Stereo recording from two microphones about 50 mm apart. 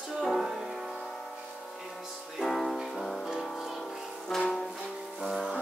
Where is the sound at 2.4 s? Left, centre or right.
Centre.